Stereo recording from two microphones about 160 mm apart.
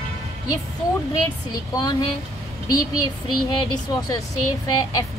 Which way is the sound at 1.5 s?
25° left (ahead or behind).